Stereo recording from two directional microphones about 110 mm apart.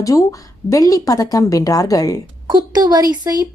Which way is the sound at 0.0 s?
30° left (ahead or behind).